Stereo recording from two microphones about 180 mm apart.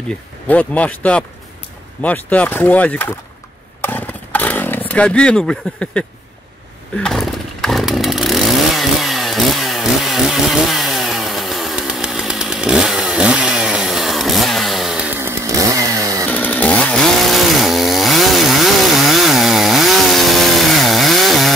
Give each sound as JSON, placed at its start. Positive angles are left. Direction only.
{"t": 0.5, "sound": "speech", "side_deg": 10}
{"t": 3.8, "sound": "a sound", "side_deg": 10}
{"t": 7.0, "sound": "chainsaw", "side_deg": 0}
{"t": 16.3, "sound": "chainsaw", "side_deg": 10}